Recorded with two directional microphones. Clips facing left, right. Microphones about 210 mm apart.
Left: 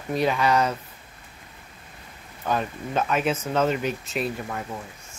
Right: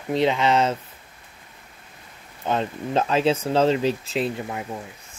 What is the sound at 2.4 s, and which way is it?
Speech, 25° right (ahead or behind).